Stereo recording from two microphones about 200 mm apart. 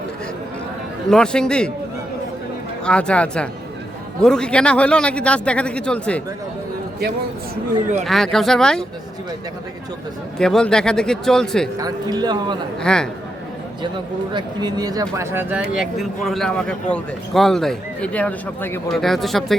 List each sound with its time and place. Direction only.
1.1 s a man's voice: 5° left (ahead or behind)
2.8 s a man's voice: 5° left (ahead or behind)
8.0 s a man's voice: centre (ahead or behind)
10.3 s a man's voice: 5° left (ahead or behind)
11.8 s speech: 20° right (ahead or behind)
12.8 s a man's voice: 5° left (ahead or behind)
14.3 s a man's voice: 20° right (ahead or behind); by 19.5 s centre (ahead or behind)